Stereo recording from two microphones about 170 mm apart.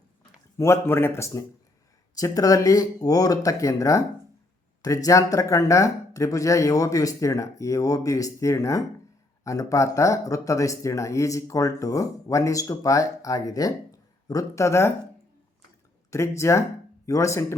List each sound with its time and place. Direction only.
0.5 s a man's voice: 15° left (ahead or behind)
16.0 s a man's voice: 15° left (ahead or behind)